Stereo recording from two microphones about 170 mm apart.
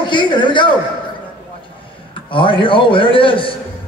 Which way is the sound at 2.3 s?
30° left (ahead or behind).